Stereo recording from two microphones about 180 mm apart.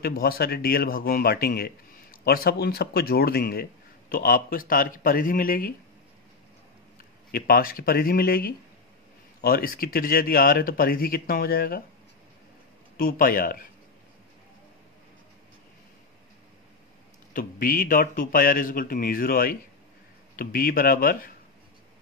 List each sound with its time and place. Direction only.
0.0 s a man's voice: 60° left (ahead or behind)
7.2 s a man's voice: 55° left (ahead or behind)
12.9 s speech: 50° left (ahead or behind)
17.3 s speech: 50° left (ahead or behind)